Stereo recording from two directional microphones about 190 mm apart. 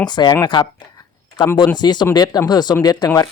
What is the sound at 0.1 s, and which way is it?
Speech, 20° left (ahead or behind).